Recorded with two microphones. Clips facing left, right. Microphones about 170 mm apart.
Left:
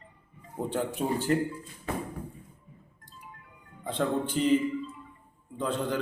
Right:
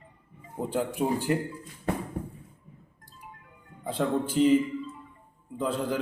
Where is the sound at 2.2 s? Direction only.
50° right (ahead or behind).